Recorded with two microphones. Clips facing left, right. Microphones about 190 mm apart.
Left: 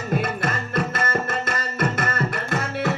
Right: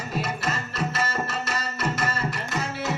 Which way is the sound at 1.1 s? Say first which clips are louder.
Left 4 dB; 50° left (ahead or behind).